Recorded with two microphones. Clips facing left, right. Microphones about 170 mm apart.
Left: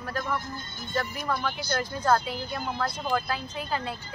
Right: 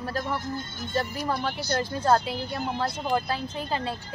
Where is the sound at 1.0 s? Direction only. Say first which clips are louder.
Right 2 dB; 30° right (ahead or behind).